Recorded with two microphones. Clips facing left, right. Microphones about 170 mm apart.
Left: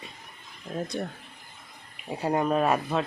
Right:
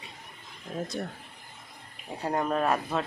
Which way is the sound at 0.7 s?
Centre (ahead or behind).